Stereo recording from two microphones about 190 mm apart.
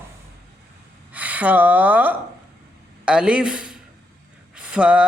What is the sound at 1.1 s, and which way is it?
Speech, 10° right (ahead or behind).